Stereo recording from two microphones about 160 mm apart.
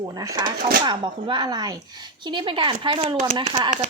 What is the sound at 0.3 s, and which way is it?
Speech, 25° right (ahead or behind).